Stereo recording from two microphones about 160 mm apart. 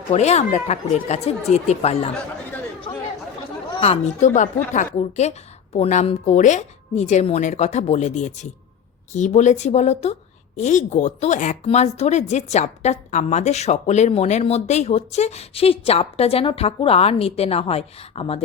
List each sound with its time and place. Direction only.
0.1 s speech: 45° left (ahead or behind)
3.8 s speech: 40° left (ahead or behind)